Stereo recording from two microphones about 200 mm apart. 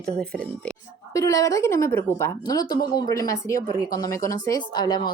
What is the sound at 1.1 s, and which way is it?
A woman's voice, 15° left (ahead or behind).